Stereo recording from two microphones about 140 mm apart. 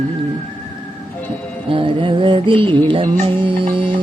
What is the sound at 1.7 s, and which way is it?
Music, 40° right (ahead or behind).